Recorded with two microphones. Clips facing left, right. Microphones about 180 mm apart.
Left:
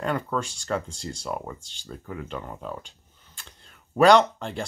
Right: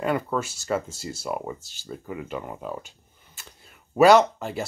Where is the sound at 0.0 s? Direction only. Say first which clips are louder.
Right 2 dB; 5° right (ahead or behind).